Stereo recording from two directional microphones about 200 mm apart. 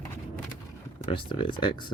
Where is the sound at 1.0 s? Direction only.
25° left (ahead or behind).